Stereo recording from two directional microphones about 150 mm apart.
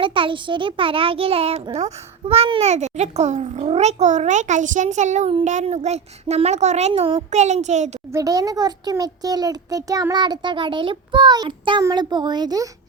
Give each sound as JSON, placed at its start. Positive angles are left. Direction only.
{"t": 0.0, "sound": "a child's voice", "side_deg": -35}
{"t": 7.3, "sound": "a child's voice", "side_deg": -50}
{"t": 8.1, "sound": "a child's voice", "side_deg": -25}